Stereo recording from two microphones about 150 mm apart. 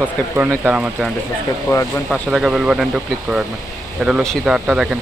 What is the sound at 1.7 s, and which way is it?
Speech, 20° left (ahead or behind).